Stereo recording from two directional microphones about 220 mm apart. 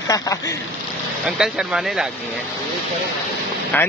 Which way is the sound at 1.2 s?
Centre (ahead or behind).